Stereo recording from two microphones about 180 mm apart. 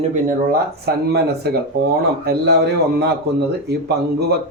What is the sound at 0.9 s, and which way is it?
A man's voice, 60° right (ahead or behind).